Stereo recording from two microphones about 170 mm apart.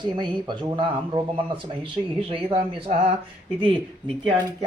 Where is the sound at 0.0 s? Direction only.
25° right (ahead or behind).